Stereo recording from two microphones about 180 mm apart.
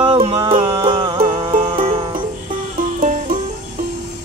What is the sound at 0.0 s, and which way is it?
Music, 30° right (ahead or behind).